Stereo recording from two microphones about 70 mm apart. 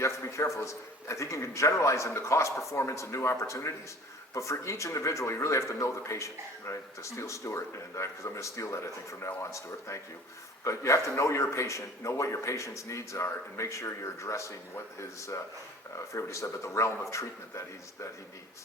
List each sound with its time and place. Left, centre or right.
0.0 s a man's voice: left
16.1 s speech: left